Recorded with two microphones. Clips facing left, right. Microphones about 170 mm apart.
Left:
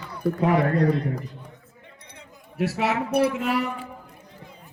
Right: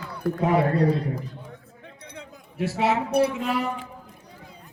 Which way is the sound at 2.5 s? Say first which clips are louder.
Right 1 dB; 25° right (ahead or behind).